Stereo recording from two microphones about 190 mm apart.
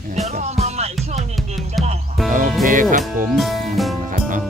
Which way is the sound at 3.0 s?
Centre (ahead or behind).